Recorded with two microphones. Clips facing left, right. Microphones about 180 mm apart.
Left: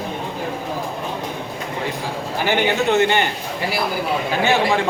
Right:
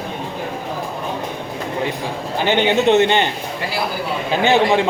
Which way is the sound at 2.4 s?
20° right (ahead or behind).